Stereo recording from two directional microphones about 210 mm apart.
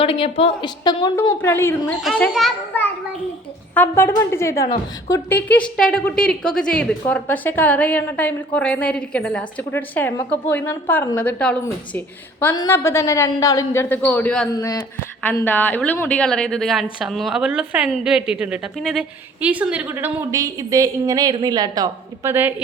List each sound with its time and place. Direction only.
0.0 s a woman's voice: 25° left (ahead or behind)
1.4 s a woman's voice: 10° left (ahead or behind)
14.5 s a woman's voice: 15° left (ahead or behind); by 22.5 s 10° right (ahead or behind)